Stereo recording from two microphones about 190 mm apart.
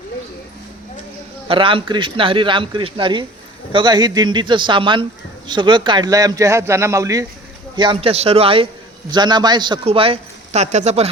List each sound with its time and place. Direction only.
1.5 s a man's voice: 25° right (ahead or behind)
7.8 s a man's voice: 30° right (ahead or behind)